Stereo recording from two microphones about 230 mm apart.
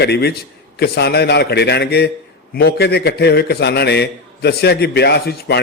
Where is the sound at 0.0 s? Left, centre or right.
Left.